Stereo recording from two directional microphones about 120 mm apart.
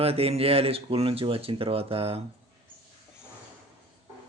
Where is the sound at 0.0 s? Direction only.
55° right (ahead or behind).